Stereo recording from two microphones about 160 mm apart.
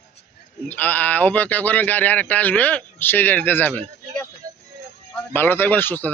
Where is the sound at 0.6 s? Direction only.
10° left (ahead or behind).